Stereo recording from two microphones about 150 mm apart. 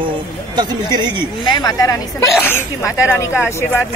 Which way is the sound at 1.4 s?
30° left (ahead or behind).